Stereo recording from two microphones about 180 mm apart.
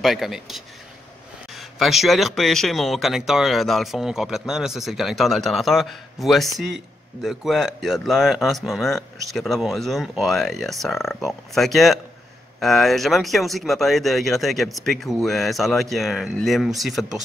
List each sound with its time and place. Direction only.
0.0 s speech: centre (ahead or behind)